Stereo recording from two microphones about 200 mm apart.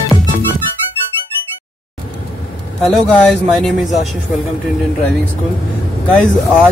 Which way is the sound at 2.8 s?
5° left (ahead or behind).